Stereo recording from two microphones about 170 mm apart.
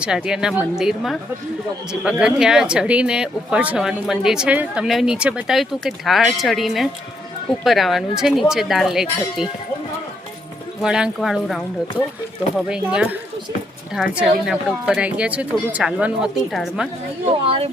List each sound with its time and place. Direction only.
0.0 s speech: 5° right (ahead or behind)
10.8 s speech: 5° right (ahead or behind)
17.2 s speech: 35° right (ahead or behind)